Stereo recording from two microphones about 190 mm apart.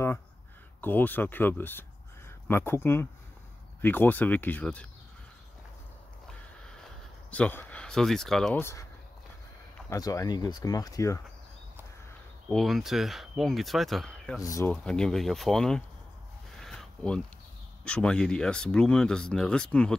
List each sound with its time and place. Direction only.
0.7 s speech: 10° left (ahead or behind)
7.2 s speech: 5° left (ahead or behind)
9.8 s speech: 20° left (ahead or behind)
12.4 s speech: centre (ahead or behind)
14.4 s speech: 20° left (ahead or behind)
14.7 s speech: 5° left (ahead or behind)
16.5 s a sound: centre (ahead or behind)
17.8 s speech: 5° left (ahead or behind)